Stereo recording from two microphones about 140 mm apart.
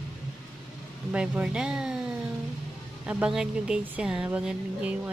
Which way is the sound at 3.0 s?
10° right (ahead or behind).